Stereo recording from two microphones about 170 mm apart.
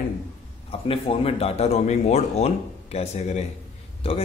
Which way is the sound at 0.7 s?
35° left (ahead or behind).